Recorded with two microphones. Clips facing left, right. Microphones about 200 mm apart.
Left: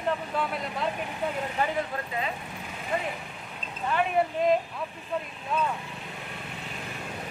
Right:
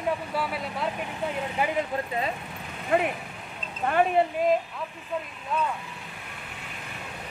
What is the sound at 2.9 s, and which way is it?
Speech, 65° right (ahead or behind).